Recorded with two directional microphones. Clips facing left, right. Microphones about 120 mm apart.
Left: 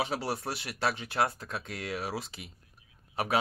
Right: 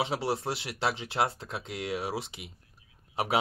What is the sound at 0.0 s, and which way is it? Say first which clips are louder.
Speech: right 2 dB; 25° right (ahead or behind).